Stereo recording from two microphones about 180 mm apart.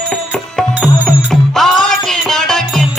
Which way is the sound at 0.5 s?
5° left (ahead or behind).